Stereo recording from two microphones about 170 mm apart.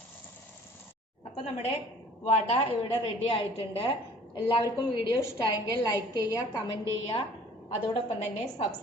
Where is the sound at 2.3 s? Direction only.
35° left (ahead or behind); by 7.2 s 20° left (ahead or behind).